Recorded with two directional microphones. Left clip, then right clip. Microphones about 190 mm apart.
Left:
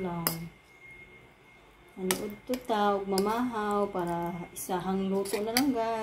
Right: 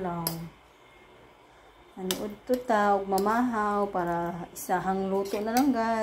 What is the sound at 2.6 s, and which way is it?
Speech, 10° right (ahead or behind).